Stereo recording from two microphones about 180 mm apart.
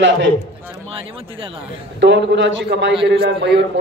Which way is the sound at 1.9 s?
75° right (ahead or behind).